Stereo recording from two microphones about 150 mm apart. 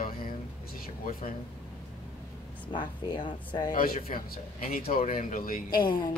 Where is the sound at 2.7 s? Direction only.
30° left (ahead or behind).